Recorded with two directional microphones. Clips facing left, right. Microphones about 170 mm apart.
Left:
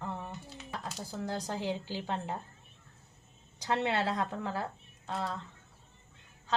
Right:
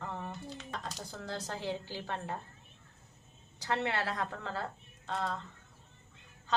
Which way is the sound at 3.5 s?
20° left (ahead or behind).